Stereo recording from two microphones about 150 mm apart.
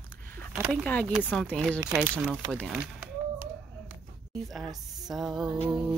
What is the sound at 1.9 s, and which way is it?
Speech, 10° right (ahead or behind).